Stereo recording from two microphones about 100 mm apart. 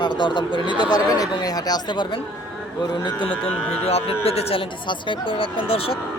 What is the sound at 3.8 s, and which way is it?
Speech, 90° left.